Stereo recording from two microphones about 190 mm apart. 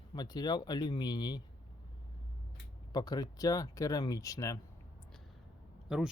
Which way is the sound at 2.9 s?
20° left (ahead or behind).